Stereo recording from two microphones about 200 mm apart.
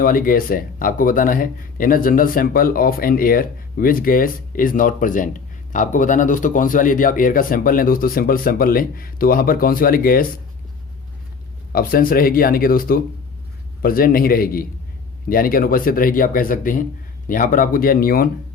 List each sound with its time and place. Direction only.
0.0 s speech: 45° left (ahead or behind)
11.7 s speech: 45° left (ahead or behind)